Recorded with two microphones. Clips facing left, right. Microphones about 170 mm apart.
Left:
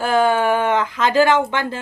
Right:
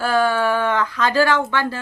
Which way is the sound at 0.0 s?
20° left (ahead or behind).